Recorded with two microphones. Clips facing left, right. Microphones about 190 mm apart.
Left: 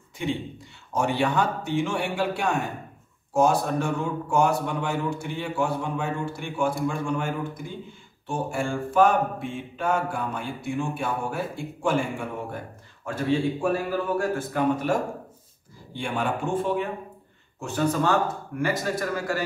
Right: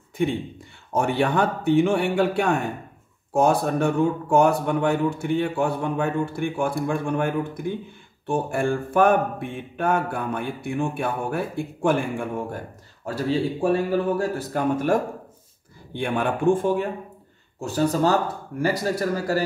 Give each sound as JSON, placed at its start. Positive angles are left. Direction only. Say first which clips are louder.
{"t": 0.9, "sound": "speech", "louder": "right 2 dB", "side_deg": -55}
{"t": 13.0, "sound": "speech", "louder": "right 1 dB", "side_deg": -35}
{"t": 14.5, "sound": "speech", "louder": "right 3 dB", "side_deg": -50}
{"t": 17.6, "sound": "speech", "louder": "right 3 dB", "side_deg": -35}